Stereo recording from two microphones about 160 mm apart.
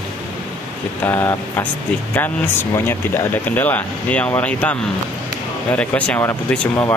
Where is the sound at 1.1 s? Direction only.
15° left (ahead or behind).